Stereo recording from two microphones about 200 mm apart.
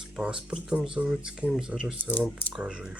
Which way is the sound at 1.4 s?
Centre (ahead or behind).